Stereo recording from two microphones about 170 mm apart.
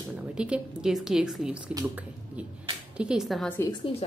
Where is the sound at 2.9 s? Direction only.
5° right (ahead or behind).